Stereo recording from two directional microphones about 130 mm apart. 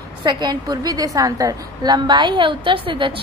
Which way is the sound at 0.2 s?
35° right (ahead or behind).